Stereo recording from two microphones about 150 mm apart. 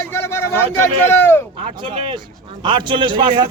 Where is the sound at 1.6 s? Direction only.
35° right (ahead or behind).